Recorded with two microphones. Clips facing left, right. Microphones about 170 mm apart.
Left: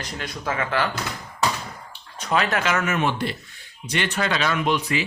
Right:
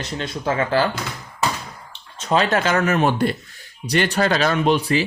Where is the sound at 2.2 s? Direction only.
30° right (ahead or behind).